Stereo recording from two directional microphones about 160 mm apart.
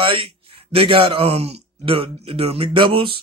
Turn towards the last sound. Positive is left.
turn(degrees=-35)  # may be behind; listen again after turning